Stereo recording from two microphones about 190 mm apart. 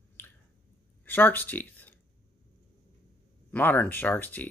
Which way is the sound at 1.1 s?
10° left (ahead or behind).